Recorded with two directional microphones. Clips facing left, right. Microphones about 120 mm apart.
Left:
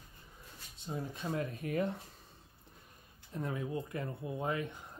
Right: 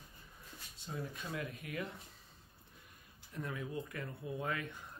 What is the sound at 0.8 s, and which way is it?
Speech, 25° left (ahead or behind).